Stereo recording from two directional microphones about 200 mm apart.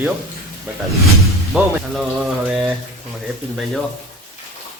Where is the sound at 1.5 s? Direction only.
5° right (ahead or behind).